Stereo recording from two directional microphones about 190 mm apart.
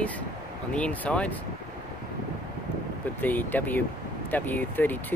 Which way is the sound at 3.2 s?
10° left (ahead or behind).